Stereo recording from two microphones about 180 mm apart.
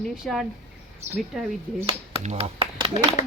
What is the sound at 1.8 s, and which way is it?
Speech, 35° right (ahead or behind).